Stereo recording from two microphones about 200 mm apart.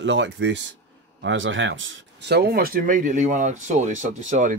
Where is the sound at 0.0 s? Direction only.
65° right (ahead or behind).